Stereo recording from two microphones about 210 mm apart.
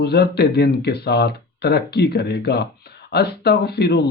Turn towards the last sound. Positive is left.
turn(degrees=50)  # may be behind; listen again after turning